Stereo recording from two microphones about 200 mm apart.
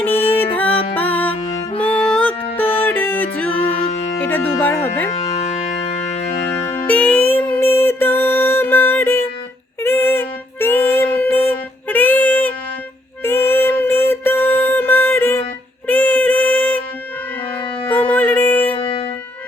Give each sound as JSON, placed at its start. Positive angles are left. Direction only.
{"t": 0.0, "sound": "music", "side_deg": 10}
{"t": 3.8, "sound": "music", "side_deg": 35}
{"t": 4.3, "sound": "music", "side_deg": 10}
{"t": 6.6, "sound": "music", "side_deg": 10}
{"t": 17.8, "sound": "music", "side_deg": 10}
{"t": 18.8, "sound": "music", "side_deg": 30}